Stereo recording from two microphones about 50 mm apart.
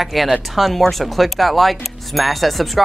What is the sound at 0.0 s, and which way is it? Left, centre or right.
Speech, centre.